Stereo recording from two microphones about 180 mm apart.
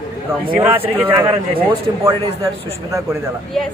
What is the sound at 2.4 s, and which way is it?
Speech, 15° right (ahead or behind).